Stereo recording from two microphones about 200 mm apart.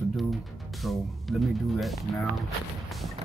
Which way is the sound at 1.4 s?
Centre (ahead or behind).